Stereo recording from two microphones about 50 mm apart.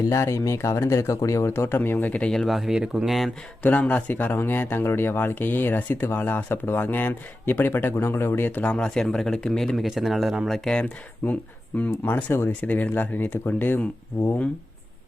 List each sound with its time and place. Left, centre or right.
0.1 s speech: left
1.6 s speech: left
2.0 s speech: left
2.3 s speech: centre
2.7 s speech: centre
3.1 s speech: centre
3.6 s speech: left
4.1 s speech: left
4.8 s speech: left
8.6 s speech: centre
9.7 s speech: centre
10.7 s speech: centre
12.3 s speech: left
12.6 s speech: left